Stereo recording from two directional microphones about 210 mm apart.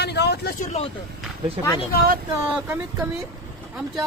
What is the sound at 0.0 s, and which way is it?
Vehicle, 50° left (ahead or behind).